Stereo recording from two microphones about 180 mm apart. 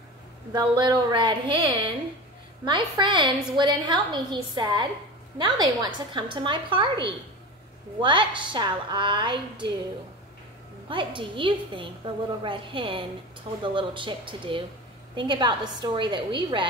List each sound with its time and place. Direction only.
0.5 s a woman's voice: 25° right (ahead or behind)
10.9 s a woman's voice: 25° right (ahead or behind)